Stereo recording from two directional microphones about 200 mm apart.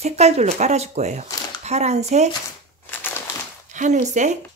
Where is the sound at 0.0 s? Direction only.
35° right (ahead or behind).